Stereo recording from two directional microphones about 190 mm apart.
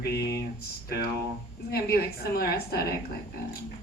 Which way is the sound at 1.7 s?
55° left (ahead or behind).